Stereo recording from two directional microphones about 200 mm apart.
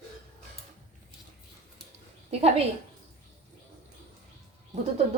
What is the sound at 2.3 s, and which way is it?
Speech, 30° right (ahead or behind).